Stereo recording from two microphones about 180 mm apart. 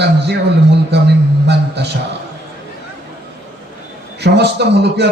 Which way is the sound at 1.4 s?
70° right (ahead or behind).